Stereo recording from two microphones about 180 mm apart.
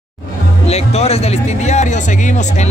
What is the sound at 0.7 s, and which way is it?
Speech, 35° left (ahead or behind).